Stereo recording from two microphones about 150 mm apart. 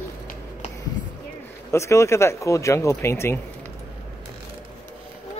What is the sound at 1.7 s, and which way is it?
Speech, 20° left (ahead or behind).